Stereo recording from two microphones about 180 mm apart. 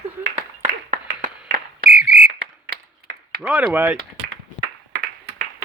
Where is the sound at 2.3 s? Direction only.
60° right (ahead or behind).